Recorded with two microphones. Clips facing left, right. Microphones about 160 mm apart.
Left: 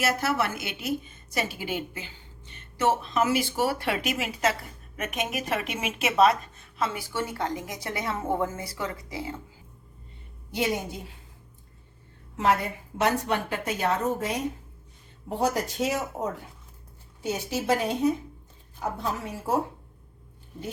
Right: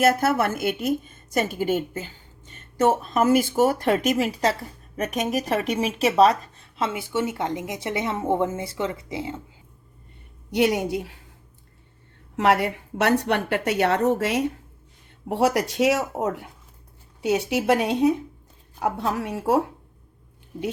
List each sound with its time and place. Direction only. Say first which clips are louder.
0.0 s a woman's voice: right 6 dB; 50° right (ahead or behind); by 9.3 s 25° right (ahead or behind)
10.5 s a woman's voice: right 7 dB; 70° right (ahead or behind)
12.4 s a woman's voice: right 4 dB; 75° right (ahead or behind)